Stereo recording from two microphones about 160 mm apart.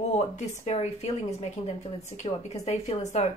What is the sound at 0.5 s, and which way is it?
Speech, 40° left (ahead or behind).